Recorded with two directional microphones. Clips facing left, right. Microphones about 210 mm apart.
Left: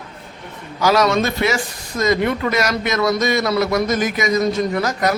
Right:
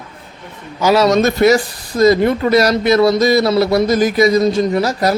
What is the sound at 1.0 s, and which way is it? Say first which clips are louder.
Speech: right 7 dB; 40° right (ahead or behind).